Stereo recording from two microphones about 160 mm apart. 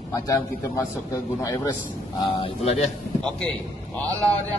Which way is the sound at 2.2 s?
35° left (ahead or behind).